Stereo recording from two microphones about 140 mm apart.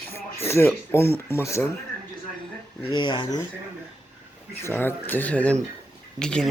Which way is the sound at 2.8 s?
30° left (ahead or behind).